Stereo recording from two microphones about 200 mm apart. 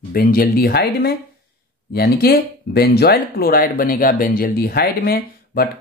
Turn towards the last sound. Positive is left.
turn(degrees=50)  # may be behind; listen again after turning